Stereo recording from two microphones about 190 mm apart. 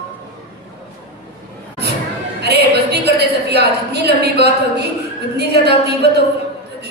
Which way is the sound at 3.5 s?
60° right (ahead or behind).